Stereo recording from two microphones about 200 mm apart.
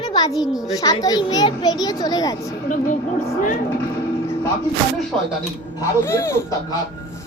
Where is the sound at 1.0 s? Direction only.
20° left (ahead or behind).